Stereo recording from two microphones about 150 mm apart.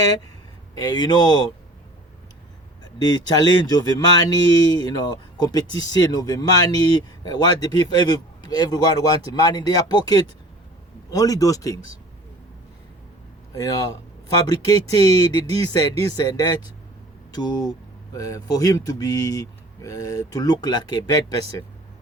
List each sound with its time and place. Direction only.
0.8 s speech: 30° left (ahead or behind)
2.8 s speech: 25° left (ahead or behind)
13.5 s speech: 20° left (ahead or behind)